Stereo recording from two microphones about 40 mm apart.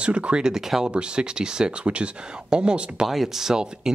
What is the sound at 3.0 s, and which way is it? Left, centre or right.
Speech, centre.